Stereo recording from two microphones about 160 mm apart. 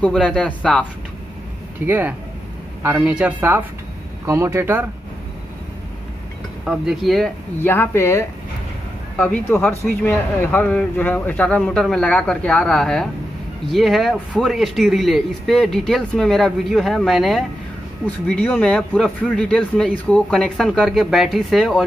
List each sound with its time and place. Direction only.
0.0 s a man's voice: 5° left (ahead or behind)
1.9 s speech: 10° right (ahead or behind)
6.6 s speech: 5° right (ahead or behind)
7.6 s a man's voice: 15° left (ahead or behind)